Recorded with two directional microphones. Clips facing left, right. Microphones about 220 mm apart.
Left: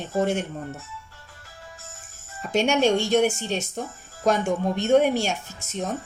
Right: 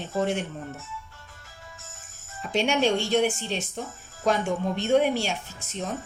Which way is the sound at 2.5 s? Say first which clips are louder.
Left 3 dB; 45° left (ahead or behind).